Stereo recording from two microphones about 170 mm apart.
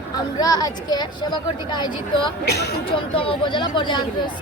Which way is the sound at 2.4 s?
75° left (ahead or behind).